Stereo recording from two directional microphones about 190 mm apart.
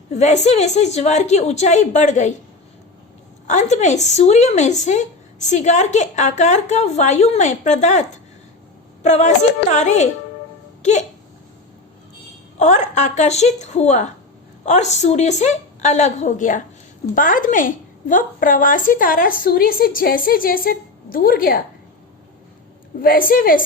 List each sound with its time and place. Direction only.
0.1 s a woman's voice: 35° left (ahead or behind)
3.4 s a woman's voice: 40° left (ahead or behind)
9.0 s a woman's voice: 40° left (ahead or behind)
12.5 s a woman's voice: 40° left (ahead or behind)
23.0 s a woman's voice: 50° left (ahead or behind)